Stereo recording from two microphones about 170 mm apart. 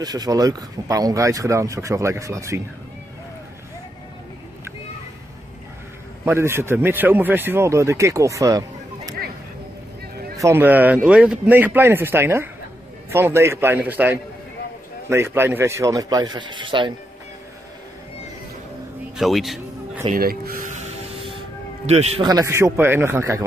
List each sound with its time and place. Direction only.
0.0 s speech: 25° right (ahead or behind)
6.2 s speech: 15° right (ahead or behind)
10.3 s speech: 15° right (ahead or behind)
19.1 s a man's voice: centre (ahead or behind)
20.2 s a man's voice: 60° right (ahead or behind); by 22.2 s 40° right (ahead or behind)
22.2 s speech: 20° right (ahead or behind)